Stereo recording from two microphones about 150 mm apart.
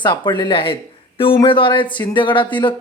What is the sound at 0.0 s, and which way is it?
Speech, 30° left (ahead or behind).